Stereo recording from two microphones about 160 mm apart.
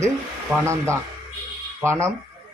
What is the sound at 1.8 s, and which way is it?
Speech, 15° right (ahead or behind).